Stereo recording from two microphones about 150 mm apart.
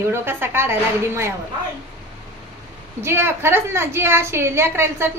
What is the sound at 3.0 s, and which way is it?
A woman's voice, 15° right (ahead or behind).